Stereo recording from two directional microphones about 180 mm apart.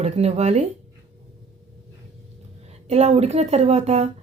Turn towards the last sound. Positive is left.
turn(degrees=-40)  # may be behind; listen again after turning